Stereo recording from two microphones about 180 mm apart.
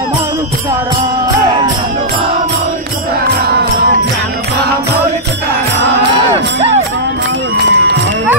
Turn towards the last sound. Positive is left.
turn(degrees=-70)  # may be behind; listen again after turning